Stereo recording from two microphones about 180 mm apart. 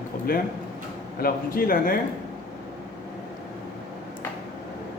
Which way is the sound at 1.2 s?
55° left (ahead or behind).